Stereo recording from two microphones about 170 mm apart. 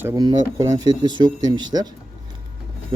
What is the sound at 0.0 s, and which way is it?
Speech, 20° right (ahead or behind).